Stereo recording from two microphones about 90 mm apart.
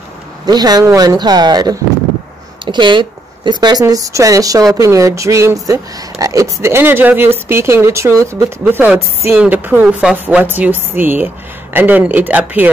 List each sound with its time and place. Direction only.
0.5 s speech: 50° right (ahead or behind)
2.6 s a woman's voice: 60° right (ahead or behind); by 8.5 s 35° right (ahead or behind)
8.7 s a woman's voice: 15° right (ahead or behind)